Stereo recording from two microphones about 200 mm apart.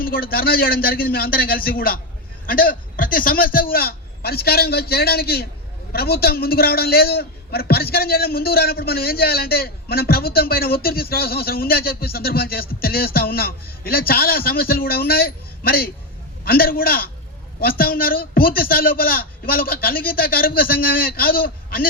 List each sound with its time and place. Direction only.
0.0 s a man's voice: 45° left (ahead or behind)